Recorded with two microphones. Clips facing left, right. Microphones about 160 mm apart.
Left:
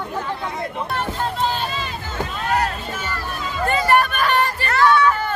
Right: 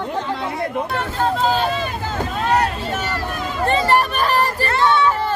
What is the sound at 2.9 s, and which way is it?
Speech, 70° right (ahead or behind).